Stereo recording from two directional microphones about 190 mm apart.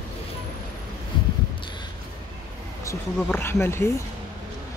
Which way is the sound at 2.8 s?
15° left (ahead or behind).